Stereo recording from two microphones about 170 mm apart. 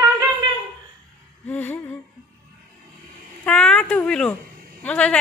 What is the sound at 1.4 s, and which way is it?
Humming, 10° left (ahead or behind).